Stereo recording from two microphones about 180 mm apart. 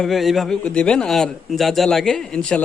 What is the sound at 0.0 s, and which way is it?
A man's voice, centre (ahead or behind).